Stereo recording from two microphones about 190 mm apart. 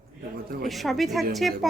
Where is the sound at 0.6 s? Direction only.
Centre (ahead or behind).